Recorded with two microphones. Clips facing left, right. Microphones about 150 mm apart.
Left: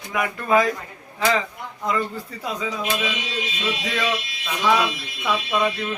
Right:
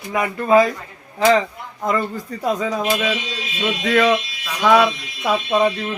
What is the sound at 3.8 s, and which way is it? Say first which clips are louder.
Speech: right 12 dB; 60° right (ahead or behind).